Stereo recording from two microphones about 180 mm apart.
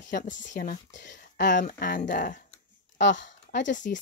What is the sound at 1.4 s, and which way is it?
Speech, 45° left (ahead or behind).